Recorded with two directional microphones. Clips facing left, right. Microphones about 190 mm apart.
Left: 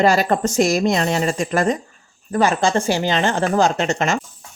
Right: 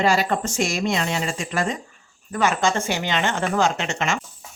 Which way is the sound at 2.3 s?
35° left (ahead or behind).